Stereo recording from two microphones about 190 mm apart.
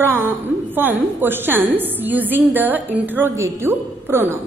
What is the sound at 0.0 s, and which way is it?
A woman's voice, 10° right (ahead or behind).